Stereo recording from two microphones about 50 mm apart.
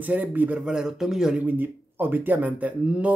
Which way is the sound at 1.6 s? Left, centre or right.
Right.